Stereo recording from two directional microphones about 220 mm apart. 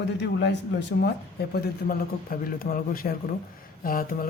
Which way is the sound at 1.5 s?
40° left (ahead or behind).